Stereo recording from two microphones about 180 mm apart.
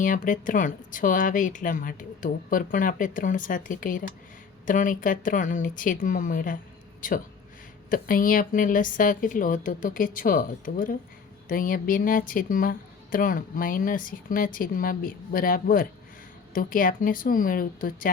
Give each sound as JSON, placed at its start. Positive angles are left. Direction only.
{"t": 0.0, "sound": "speech", "side_deg": 50}
{"t": 7.9, "sound": "speech", "side_deg": 50}